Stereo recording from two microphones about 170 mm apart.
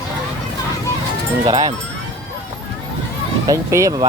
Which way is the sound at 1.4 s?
30° right (ahead or behind).